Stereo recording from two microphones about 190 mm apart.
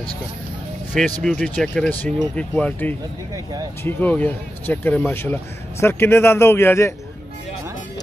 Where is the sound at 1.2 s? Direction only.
5° left (ahead or behind).